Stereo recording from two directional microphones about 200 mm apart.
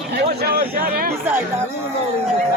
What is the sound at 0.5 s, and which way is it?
Speech, 50° right (ahead or behind).